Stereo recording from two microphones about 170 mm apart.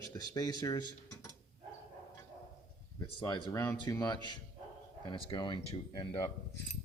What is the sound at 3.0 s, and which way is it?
Speech, 25° left (ahead or behind).